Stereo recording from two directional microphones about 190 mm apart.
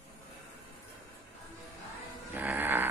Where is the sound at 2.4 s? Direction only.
10° right (ahead or behind).